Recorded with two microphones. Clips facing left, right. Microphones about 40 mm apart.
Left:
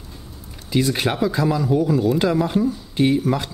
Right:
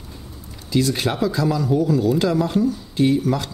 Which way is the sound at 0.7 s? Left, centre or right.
Centre.